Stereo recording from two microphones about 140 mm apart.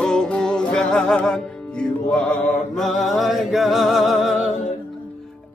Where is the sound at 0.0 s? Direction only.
5° left (ahead or behind).